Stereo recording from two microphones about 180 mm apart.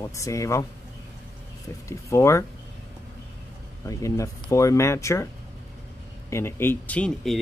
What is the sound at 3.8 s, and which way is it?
Speech, 15° left (ahead or behind).